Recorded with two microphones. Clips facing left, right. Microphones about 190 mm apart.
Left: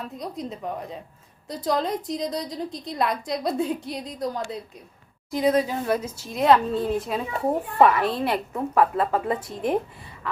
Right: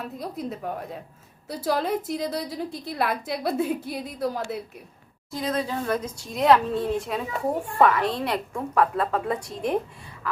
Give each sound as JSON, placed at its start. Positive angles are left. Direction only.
{"t": 0.0, "sound": "a woman's voice", "side_deg": -5}
{"t": 5.3, "sound": "a woman's voice", "side_deg": 15}